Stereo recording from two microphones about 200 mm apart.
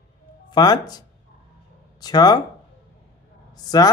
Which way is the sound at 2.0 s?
20° left (ahead or behind).